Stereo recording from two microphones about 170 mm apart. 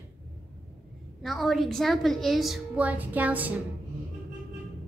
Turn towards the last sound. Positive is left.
turn(degrees=-10)  # may be behind; listen again after turning